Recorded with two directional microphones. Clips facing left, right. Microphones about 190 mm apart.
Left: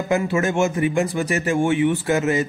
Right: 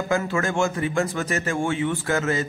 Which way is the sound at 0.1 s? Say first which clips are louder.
Left 4 dB; 20° left (ahead or behind).